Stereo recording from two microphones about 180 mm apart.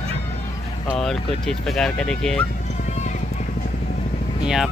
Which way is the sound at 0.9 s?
Centre (ahead or behind).